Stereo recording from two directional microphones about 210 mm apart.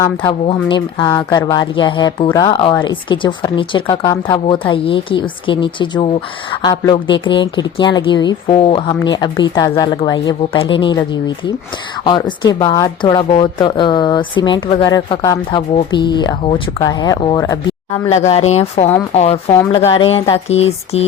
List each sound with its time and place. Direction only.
0.0 s speech: 15° left (ahead or behind)
18.1 s speech: 30° left (ahead or behind)